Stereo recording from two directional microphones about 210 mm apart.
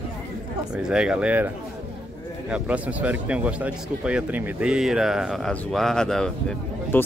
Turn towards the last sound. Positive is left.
turn(degrees=5)  # may be behind; listen again after turning